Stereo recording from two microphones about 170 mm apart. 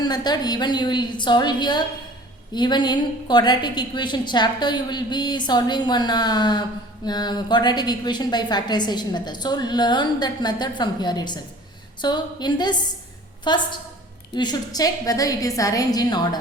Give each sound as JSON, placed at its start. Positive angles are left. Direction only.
{"t": 0.0, "sound": "a woman's voice", "side_deg": 25}